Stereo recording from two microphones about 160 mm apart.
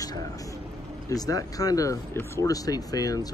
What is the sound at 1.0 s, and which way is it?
Speech, 20° left (ahead or behind).